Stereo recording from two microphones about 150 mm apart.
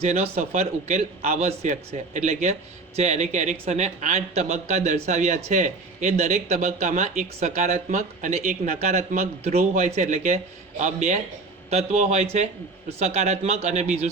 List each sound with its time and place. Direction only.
0.0 s a man's voice: 45° right (ahead or behind)